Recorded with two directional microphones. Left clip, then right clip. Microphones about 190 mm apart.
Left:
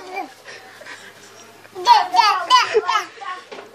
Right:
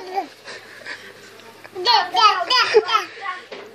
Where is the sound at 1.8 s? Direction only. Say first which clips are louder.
Left 2 dB; 5° left (ahead or behind).